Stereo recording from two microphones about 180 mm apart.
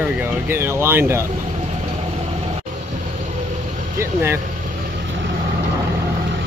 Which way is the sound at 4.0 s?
15° right (ahead or behind).